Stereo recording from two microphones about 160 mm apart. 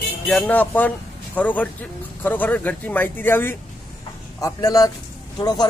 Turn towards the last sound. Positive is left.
turn(degrees=25)  # may be behind; listen again after turning